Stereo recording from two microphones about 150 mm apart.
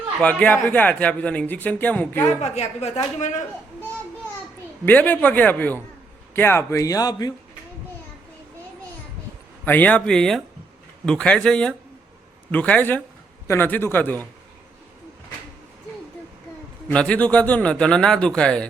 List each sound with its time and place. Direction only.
0.2 s a man's voice: 10° left (ahead or behind)
2.4 s a woman's voice: 45° left (ahead or behind)
4.9 s a man's voice: 10° left (ahead or behind); by 7.3 s 25° left (ahead or behind)
9.6 s a man's voice: 10° left (ahead or behind)
16.9 s a man's voice: 5° left (ahead or behind)